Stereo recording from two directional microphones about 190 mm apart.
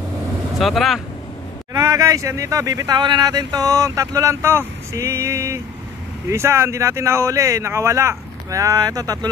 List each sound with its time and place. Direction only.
0.6 s speech: centre (ahead or behind)
1.7 s speech: 20° right (ahead or behind)